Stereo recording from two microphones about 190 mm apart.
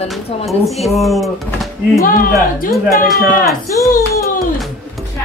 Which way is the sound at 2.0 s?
50° left (ahead or behind).